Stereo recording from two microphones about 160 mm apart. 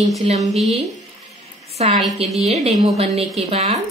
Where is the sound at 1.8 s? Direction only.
40° right (ahead or behind).